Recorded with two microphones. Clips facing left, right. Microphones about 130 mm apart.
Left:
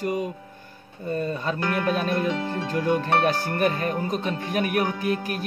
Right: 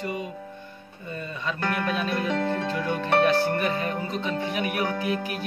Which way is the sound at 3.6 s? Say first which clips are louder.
Left 3 dB; 50° left (ahead or behind).